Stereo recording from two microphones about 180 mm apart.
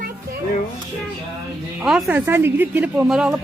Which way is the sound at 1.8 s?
5° right (ahead or behind).